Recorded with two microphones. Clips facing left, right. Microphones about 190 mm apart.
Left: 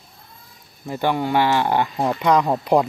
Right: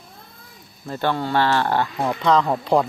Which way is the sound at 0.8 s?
15° left (ahead or behind).